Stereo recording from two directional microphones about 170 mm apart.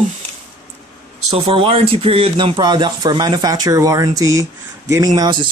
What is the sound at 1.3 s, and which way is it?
Speech, 35° right (ahead or behind).